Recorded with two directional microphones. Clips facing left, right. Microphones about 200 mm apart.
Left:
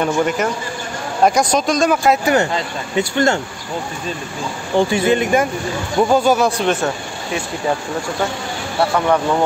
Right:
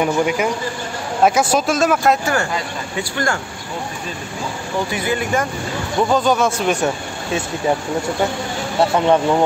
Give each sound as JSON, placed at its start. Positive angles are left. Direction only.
{"t": 0.0, "sound": "a man's voice", "side_deg": -10}
{"t": 2.2, "sound": "speech", "side_deg": 20}
{"t": 4.7, "sound": "speech", "side_deg": 25}
{"t": 6.0, "sound": "speech", "side_deg": 10}
{"t": 8.9, "sound": "speech", "side_deg": -20}